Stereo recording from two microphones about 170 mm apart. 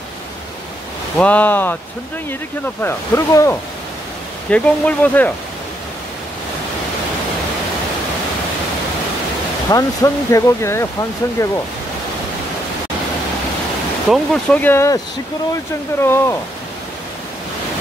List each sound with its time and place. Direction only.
1.1 s speech: 10° left (ahead or behind)
2.8 s speech: 15° left (ahead or behind)
9.7 s speech: 20° left (ahead or behind)
14.0 s speech: centre (ahead or behind)
16.0 s speech: 15° left (ahead or behind)